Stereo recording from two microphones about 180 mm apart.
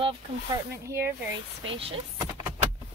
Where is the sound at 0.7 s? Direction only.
15° right (ahead or behind).